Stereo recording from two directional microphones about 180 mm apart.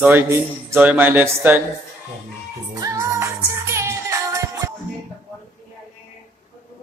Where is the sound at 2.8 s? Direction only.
20° right (ahead or behind).